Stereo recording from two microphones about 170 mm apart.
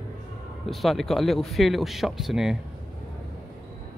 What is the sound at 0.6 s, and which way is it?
Speech, centre (ahead or behind).